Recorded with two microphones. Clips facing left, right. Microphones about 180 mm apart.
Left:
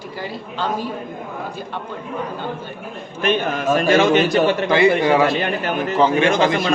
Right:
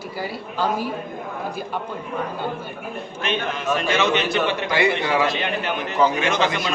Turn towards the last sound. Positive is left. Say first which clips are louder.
# left 5 dB
turn(degrees=50)  # may be behind; listen again after turning